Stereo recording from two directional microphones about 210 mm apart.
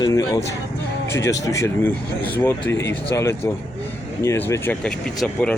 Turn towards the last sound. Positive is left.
turn(degrees=5)  # may be behind; listen again after turning